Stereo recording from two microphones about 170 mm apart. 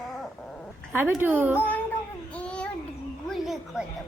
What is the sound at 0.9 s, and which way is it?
Speech, 15° right (ahead or behind).